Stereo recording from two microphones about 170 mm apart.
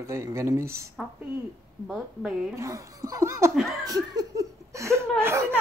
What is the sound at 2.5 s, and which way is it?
Speech, 20° right (ahead or behind).